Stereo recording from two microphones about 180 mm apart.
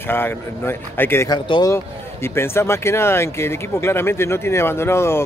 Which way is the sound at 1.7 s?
15° left (ahead or behind).